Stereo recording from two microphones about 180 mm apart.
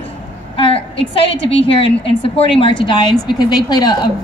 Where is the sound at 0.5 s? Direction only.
30° left (ahead or behind).